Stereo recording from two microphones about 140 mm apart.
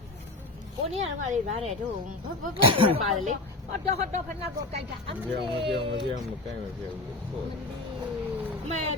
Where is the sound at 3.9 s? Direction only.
50° right (ahead or behind).